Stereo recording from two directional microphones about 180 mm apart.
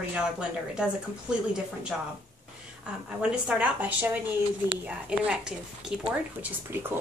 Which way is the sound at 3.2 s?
5° right (ahead or behind).